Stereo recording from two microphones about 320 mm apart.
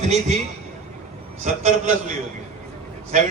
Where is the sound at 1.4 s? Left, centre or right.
Right.